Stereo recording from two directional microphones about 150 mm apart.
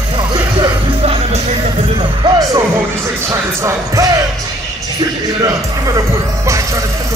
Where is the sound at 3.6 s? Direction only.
25° right (ahead or behind).